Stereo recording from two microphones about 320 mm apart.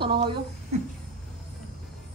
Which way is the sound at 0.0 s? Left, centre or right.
Centre.